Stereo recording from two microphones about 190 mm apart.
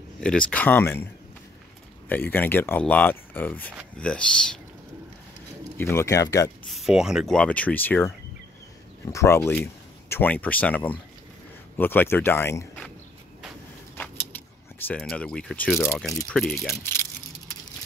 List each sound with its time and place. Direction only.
0.2 s speech: 5° left (ahead or behind)
2.0 s speech: 10° left (ahead or behind)
5.8 s speech: 15° left (ahead or behind)
6.7 s speech: centre (ahead or behind)
9.1 s speech: 15° left (ahead or behind)
14.9 s speech: 5° left (ahead or behind)
16.7 s a sound: 15° left (ahead or behind)